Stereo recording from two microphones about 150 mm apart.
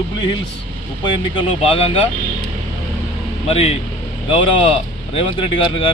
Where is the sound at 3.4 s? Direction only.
40° left (ahead or behind).